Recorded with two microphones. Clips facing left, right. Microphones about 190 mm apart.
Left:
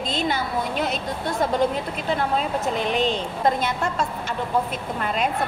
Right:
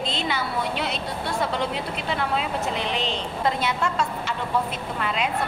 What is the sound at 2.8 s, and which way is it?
Speech, 45° left (ahead or behind).